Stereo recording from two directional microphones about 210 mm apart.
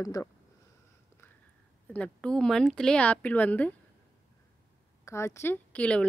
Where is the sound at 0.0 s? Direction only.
15° left (ahead or behind).